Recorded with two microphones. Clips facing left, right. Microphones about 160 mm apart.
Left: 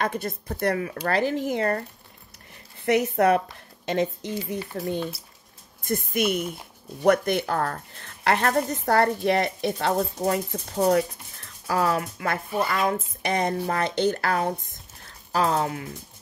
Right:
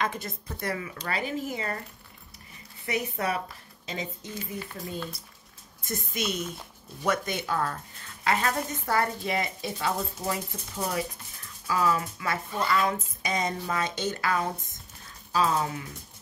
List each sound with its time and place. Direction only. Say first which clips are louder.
0.0 s speech: left 4 dB; 45° left (ahead or behind)
1.1 s speech: left 7 dB; 85° left
1.5 s a woman's voice: left 9 dB; 60° left (ahead or behind)
2.8 s a woman's voice: left 10 dB; 65° left (ahead or behind)
5.9 s a woman's voice: left 7 dB; 55° left (ahead or behind)
11.6 s speech: left 2 dB; 55° left (ahead or behind)
13.2 s a woman's voice: left 5 dB; 65° left (ahead or behind)
15.0 s a sound: left 2 dB; 65° left (ahead or behind)